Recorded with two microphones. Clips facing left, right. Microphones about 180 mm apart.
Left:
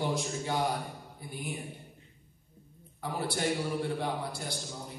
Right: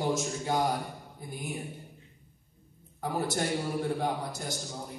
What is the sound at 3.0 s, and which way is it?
A man's voice, 45° right (ahead or behind).